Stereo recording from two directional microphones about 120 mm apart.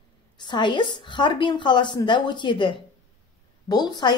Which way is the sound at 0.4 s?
40° left (ahead or behind).